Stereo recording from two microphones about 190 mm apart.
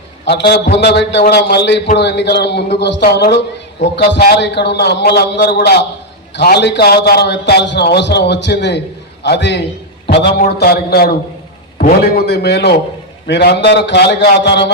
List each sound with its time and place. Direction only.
0.3 s a man's voice: 65° left (ahead or behind)